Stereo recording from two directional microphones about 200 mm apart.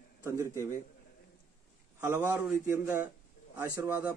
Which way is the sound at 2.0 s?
10° right (ahead or behind).